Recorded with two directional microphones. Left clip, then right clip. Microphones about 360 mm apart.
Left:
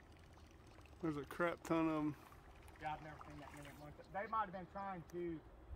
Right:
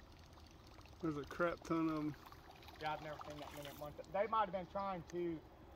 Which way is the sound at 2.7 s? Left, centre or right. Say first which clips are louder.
Right 3 dB; centre.